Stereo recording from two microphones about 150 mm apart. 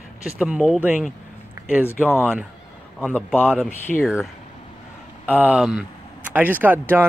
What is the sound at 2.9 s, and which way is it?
Speech, 10° left (ahead or behind).